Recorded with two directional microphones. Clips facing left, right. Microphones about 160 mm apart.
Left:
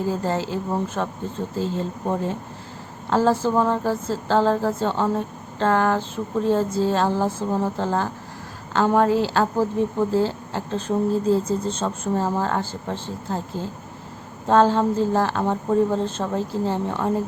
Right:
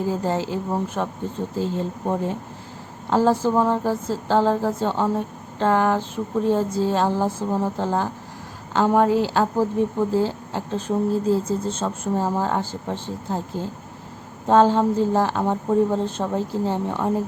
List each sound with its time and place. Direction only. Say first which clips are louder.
0.1 s a woman's voice: even; 15° right (ahead or behind)